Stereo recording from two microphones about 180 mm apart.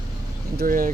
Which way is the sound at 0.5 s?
50° right (ahead or behind).